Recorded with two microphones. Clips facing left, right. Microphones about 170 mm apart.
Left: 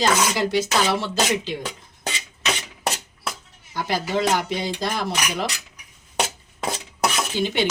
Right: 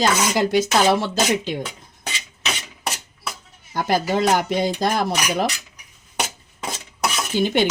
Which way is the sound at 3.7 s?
50° right (ahead or behind).